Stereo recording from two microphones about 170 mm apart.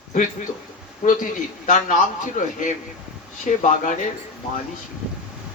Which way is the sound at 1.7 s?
45° left (ahead or behind).